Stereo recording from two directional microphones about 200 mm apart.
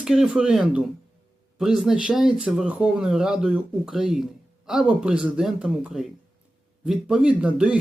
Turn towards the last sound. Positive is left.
turn(degrees=-5)  # may be behind; listen again after turning